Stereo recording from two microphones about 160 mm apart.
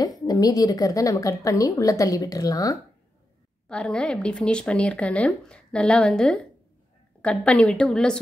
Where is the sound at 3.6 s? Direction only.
5° left (ahead or behind).